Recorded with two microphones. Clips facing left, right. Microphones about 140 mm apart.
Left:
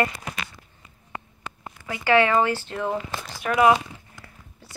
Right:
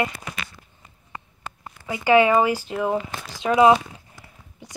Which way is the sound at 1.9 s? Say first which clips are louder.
Right 3 dB; 15° right (ahead or behind).